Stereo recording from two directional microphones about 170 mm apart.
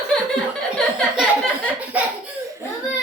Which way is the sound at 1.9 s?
10° right (ahead or behind).